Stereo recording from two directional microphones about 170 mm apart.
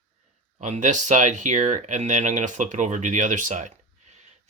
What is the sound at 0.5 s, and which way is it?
Speech, 45° right (ahead or behind).